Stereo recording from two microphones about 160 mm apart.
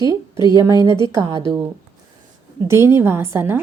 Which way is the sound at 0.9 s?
30° left (ahead or behind).